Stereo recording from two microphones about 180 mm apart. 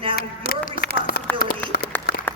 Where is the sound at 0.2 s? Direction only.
60° left (ahead or behind).